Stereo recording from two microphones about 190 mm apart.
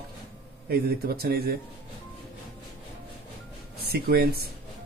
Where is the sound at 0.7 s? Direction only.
55° right (ahead or behind).